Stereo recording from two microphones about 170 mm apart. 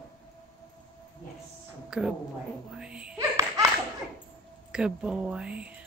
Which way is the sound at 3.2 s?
15° right (ahead or behind).